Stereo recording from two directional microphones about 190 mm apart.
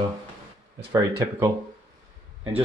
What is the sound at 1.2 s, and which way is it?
Speech, 15° right (ahead or behind).